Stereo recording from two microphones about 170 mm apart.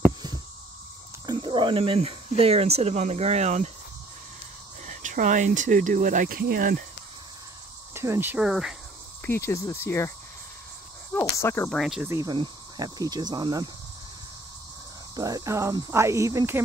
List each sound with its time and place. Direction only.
1.2 s speech: 25° right (ahead or behind); by 3.7 s 40° right (ahead or behind)
4.8 s speech: 45° right (ahead or behind)
7.9 s speech: 15° right (ahead or behind)
9.2 s cricket: 15° left (ahead or behind)
11.1 s cricket: 15° left (ahead or behind)
11.7 s speech: centre (ahead or behind)
12.0 s speech: 15° right (ahead or behind)
12.3 s cricket: 25° right (ahead or behind)
15.1 s speech: 20° right (ahead or behind)